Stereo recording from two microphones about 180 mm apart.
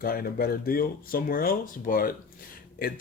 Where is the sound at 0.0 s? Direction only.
55° left (ahead or behind).